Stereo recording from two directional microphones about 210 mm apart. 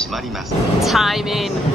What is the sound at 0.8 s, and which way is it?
Speech, centre (ahead or behind).